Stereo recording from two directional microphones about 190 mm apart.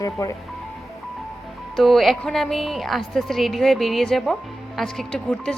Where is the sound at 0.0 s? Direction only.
15° left (ahead or behind).